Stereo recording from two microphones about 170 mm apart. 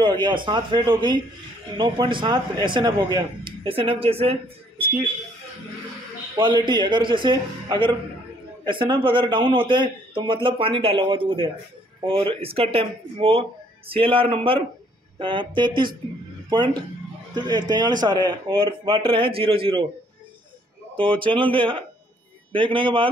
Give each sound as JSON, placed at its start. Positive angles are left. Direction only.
{"t": 0.0, "sound": "a man's voice", "side_deg": -25}
{"t": 6.3, "sound": "a man's voice", "side_deg": -25}
{"t": 20.9, "sound": "speech", "side_deg": -30}